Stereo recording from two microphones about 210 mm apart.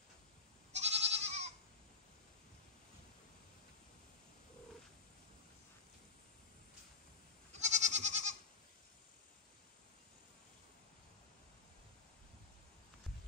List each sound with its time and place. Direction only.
0.7 s goat: 30° right (ahead or behind)
7.5 s goat: 35° right (ahead or behind)